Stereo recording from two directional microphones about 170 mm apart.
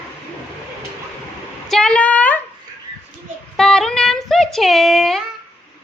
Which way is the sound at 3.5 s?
5° left (ahead or behind).